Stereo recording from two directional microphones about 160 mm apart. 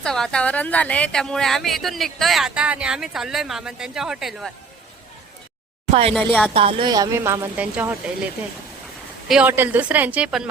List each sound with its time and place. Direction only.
0.0 s speech: 5° left (ahead or behind)
5.9 s speech: 35° right (ahead or behind)
6.1 s speech: centre (ahead or behind)
6.5 s a woman's voice: 35° right (ahead or behind); by 8.3 s 10° right (ahead or behind)
9.3 s a woman's voice: 10° right (ahead or behind)